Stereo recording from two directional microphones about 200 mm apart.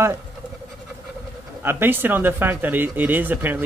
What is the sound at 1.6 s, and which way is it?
Speech, 10° right (ahead or behind).